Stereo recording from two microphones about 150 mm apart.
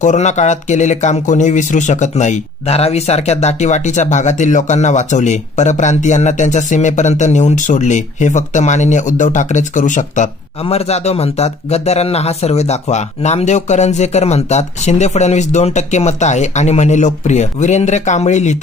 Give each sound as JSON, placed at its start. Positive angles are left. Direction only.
{"t": 0.0, "sound": "speech", "side_deg": 50}